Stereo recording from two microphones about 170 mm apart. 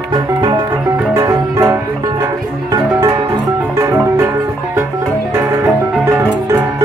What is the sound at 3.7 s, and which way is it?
Music, 15° right (ahead or behind).